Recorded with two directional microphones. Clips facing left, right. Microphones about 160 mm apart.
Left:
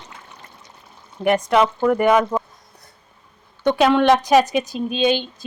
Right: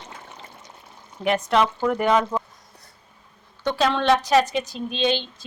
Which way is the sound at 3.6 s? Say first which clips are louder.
Left 6 dB; 15° left (ahead or behind).